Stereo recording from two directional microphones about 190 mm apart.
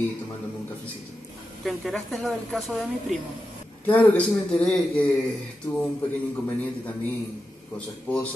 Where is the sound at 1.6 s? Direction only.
Centre (ahead or behind).